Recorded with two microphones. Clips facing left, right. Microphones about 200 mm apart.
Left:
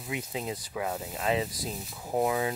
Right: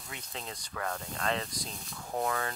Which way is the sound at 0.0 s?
5° left (ahead or behind).